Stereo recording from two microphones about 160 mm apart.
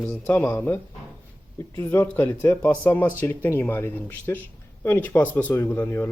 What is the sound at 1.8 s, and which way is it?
A man's voice, 15° left (ahead or behind).